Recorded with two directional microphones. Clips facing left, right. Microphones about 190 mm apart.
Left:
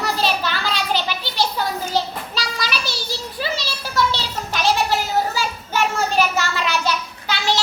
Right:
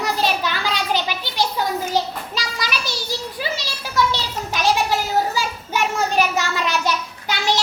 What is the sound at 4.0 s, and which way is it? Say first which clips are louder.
Children playing: right 1 dB; 15° right (ahead or behind).